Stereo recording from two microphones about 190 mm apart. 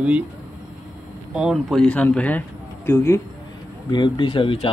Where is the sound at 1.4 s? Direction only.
Centre (ahead or behind).